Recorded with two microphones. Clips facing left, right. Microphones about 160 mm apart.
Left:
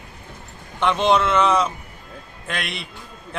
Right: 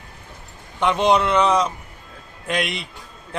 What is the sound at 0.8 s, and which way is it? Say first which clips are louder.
A man's voice: right 1 dB; centre (ahead or behind).